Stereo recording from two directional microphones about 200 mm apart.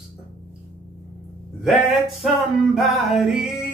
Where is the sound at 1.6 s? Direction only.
Centre (ahead or behind).